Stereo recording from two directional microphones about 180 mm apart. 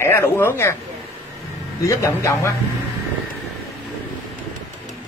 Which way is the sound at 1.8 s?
15° left (ahead or behind).